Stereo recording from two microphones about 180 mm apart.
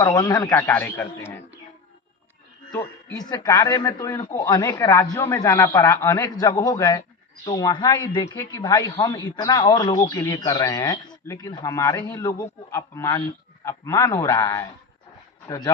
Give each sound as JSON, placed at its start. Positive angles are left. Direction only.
{"t": 0.0, "sound": "a man's voice", "side_deg": 20}
{"t": 2.7, "sound": "a man's voice", "side_deg": 20}